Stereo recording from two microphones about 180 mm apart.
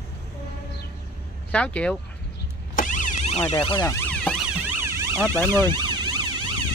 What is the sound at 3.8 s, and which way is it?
Emergency vehicle, 15° left (ahead or behind).